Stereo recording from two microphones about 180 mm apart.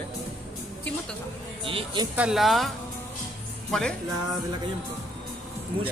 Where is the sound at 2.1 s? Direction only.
5° right (ahead or behind).